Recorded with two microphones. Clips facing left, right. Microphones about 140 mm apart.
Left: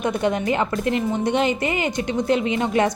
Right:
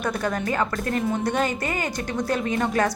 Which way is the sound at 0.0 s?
20° left (ahead or behind).